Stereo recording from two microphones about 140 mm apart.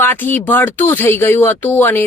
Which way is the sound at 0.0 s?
15° left (ahead or behind).